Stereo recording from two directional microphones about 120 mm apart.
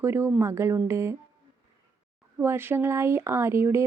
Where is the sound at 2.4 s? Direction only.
20° right (ahead or behind).